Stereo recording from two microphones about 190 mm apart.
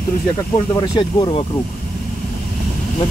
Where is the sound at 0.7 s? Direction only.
20° left (ahead or behind).